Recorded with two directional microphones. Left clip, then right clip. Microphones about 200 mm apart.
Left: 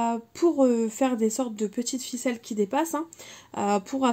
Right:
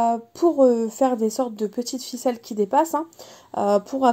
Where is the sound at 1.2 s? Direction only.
25° left (ahead or behind).